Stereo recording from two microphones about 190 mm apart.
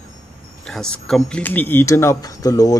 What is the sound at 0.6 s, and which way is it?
Speech, 5° left (ahead or behind).